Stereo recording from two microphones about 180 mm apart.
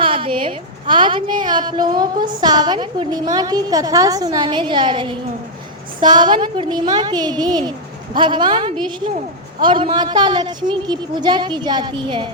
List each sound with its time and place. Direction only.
0.0 s a woman's voice: 30° right (ahead or behind)